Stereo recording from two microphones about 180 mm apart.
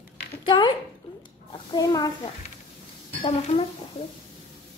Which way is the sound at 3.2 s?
35° left (ahead or behind).